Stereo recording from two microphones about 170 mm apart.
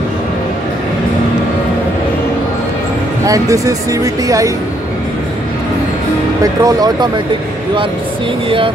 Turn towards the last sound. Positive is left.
turn(degrees=-20)  # may be behind; listen again after turning